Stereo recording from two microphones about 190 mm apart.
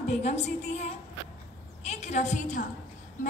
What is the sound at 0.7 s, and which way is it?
A woman's voice, 35° left (ahead or behind).